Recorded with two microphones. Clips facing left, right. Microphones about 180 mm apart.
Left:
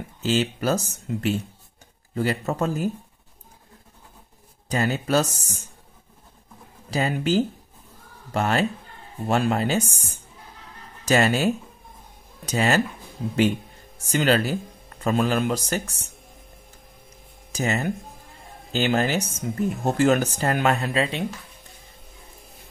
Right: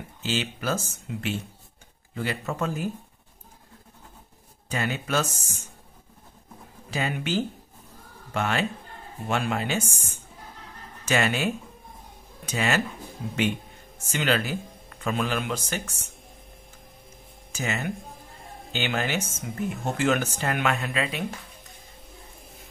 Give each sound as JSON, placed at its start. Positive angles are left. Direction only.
{"t": 0.2, "sound": "speech", "side_deg": 40}
{"t": 4.6, "sound": "speech", "side_deg": 40}
{"t": 6.9, "sound": "speech", "side_deg": 35}
{"t": 13.9, "sound": "speech", "side_deg": 35}
{"t": 17.5, "sound": "speech", "side_deg": 40}